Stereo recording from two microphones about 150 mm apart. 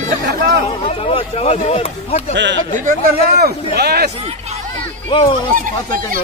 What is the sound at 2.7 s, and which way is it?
A man's voice, 75° right (ahead or behind).